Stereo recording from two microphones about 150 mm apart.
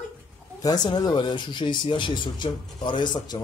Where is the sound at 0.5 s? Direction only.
25° left (ahead or behind).